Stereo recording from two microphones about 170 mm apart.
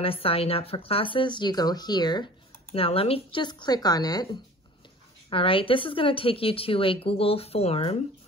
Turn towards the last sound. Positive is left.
turn(degrees=35)  # may be behind; listen again after turning